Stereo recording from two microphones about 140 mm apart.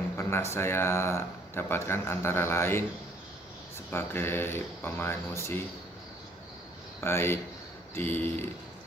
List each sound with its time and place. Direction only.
0.2 s speech: 20° left (ahead or behind)
3.9 s speech: 15° left (ahead or behind)
7.0 s speech: 15° left (ahead or behind)